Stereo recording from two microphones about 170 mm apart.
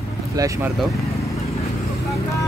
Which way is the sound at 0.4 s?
20° right (ahead or behind).